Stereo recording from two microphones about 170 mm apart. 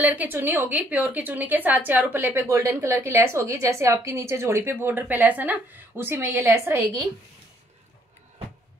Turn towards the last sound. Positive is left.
turn(degrees=-20)  # may be behind; listen again after turning